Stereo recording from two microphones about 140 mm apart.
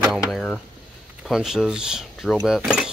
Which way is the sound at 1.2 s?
Centre (ahead or behind).